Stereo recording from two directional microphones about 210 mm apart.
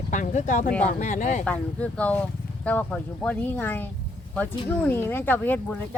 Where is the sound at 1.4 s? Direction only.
5° left (ahead or behind).